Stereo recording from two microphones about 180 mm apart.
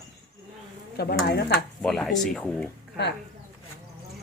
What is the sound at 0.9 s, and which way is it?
Speech, 60° left (ahead or behind).